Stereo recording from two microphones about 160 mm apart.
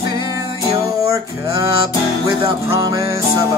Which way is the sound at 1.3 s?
20° right (ahead or behind).